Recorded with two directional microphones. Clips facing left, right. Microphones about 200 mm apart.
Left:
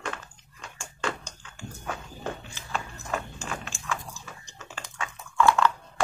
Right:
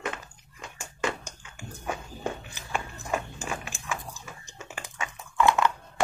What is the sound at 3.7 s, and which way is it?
Chewing, 15° right (ahead or behind).